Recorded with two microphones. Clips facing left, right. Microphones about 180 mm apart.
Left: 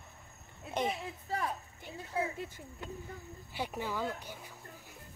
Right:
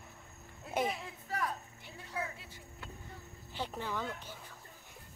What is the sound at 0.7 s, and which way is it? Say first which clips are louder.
Speech: even; centre (ahead or behind).